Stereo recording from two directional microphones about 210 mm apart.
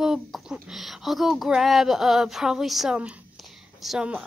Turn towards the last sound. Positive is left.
turn(degrees=-5)  # may be behind; listen again after turning